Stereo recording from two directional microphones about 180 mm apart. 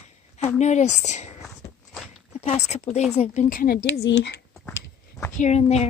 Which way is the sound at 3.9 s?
85° left.